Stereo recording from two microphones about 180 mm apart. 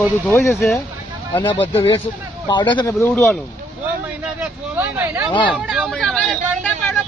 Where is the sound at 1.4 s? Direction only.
30° left (ahead or behind); by 3.4 s 10° left (ahead or behind).